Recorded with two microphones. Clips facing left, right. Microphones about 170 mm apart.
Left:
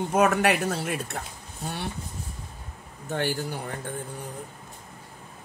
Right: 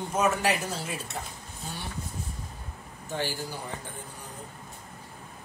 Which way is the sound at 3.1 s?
60° left (ahead or behind).